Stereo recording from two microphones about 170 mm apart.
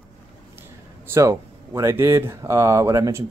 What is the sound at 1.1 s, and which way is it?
Speech, 20° right (ahead or behind).